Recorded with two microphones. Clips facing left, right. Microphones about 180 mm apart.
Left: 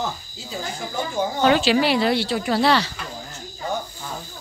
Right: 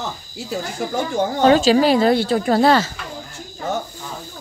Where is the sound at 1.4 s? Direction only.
40° right (ahead or behind).